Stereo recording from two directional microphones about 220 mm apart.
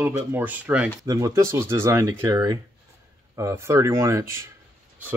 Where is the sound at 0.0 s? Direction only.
10° right (ahead or behind).